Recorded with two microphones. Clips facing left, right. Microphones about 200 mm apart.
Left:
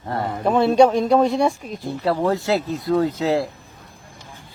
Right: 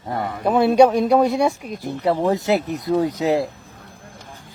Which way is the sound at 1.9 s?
20° right (ahead or behind).